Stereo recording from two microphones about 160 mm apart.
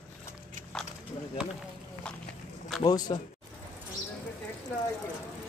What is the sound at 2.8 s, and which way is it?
Speech, 25° left (ahead or behind).